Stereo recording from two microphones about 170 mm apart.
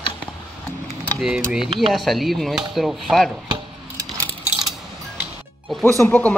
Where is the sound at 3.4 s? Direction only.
25° right (ahead or behind).